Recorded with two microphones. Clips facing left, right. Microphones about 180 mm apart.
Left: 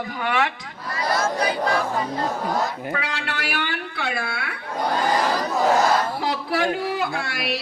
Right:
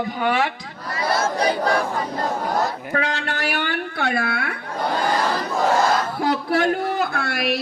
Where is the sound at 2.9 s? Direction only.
45° right (ahead or behind).